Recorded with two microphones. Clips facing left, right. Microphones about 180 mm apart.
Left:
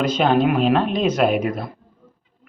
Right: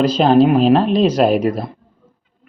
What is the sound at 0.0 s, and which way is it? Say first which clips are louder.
Speech: right 5 dB; 35° right (ahead or behind).